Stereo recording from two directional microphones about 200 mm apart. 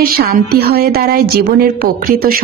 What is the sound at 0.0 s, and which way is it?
A woman's voice, 50° right (ahead or behind).